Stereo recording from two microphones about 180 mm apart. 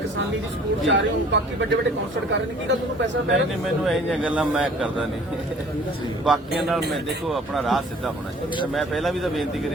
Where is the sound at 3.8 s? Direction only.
5° right (ahead or behind).